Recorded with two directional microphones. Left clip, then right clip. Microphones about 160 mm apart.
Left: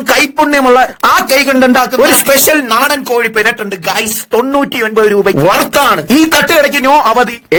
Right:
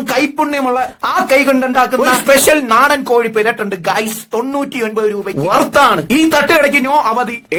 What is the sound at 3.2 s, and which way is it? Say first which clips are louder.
Speech: left 2 dB; 35° left (ahead or behind).